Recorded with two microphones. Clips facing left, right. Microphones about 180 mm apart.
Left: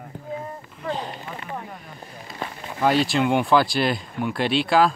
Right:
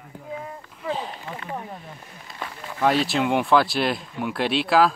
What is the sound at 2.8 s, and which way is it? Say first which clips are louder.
Speech: left 1 dB; centre (ahead or behind).